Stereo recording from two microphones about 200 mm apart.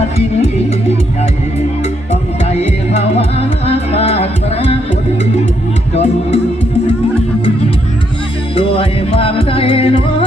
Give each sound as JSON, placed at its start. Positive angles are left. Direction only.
{"t": 2.4, "sound": "music", "side_deg": 35}
{"t": 5.9, "sound": "music", "side_deg": 30}
{"t": 8.5, "sound": "music", "side_deg": 30}